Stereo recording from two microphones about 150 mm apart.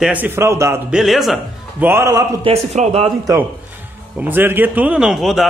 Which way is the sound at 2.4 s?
45° right (ahead or behind).